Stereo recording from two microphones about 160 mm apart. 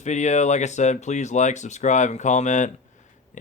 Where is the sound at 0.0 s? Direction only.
45° left (ahead or behind).